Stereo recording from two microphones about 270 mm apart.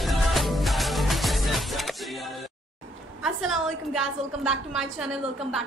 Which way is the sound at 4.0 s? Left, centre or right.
Centre.